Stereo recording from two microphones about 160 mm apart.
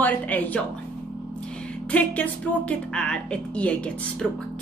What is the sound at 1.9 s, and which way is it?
A woman's voice, 10° left (ahead or behind).